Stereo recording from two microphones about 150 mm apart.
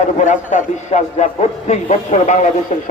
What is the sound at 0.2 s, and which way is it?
Speech, 55° left (ahead or behind).